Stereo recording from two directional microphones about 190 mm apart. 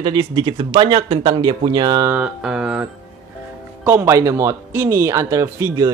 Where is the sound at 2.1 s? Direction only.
5° right (ahead or behind).